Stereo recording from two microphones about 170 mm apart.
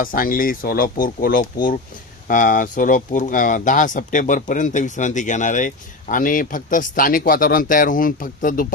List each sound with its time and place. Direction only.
0.0 s speech: 55° left (ahead or behind)